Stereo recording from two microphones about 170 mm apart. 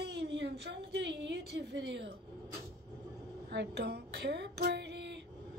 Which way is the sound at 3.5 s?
80° right.